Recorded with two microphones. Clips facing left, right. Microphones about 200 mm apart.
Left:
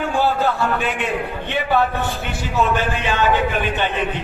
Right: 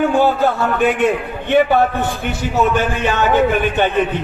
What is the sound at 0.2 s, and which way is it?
A man's voice, 50° right (ahead or behind).